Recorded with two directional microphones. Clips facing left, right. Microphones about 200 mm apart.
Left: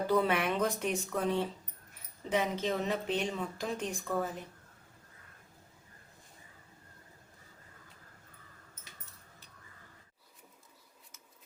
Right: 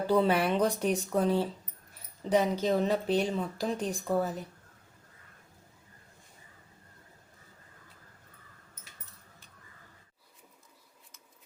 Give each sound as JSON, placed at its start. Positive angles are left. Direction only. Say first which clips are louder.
{"t": 0.1, "sound": "speech", "louder": "right 5 dB", "side_deg": -30}